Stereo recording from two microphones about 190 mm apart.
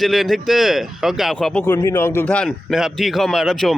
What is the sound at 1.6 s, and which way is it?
Speech, 15° left (ahead or behind).